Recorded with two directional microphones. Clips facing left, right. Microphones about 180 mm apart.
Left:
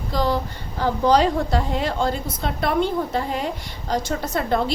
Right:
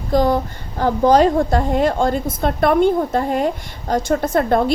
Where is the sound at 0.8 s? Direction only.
50° right (ahead or behind).